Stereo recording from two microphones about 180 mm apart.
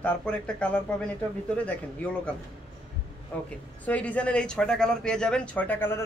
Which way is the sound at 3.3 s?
10° left (ahead or behind).